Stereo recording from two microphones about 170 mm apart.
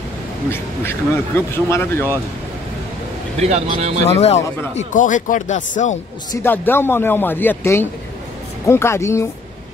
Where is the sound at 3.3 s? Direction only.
40° right (ahead or behind).